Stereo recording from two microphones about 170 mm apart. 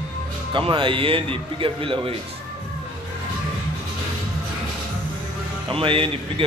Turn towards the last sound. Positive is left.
turn(degrees=-30)  # may be behind; listen again after turning